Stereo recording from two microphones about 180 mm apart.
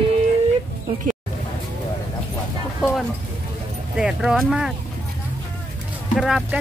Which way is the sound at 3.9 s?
5° right (ahead or behind).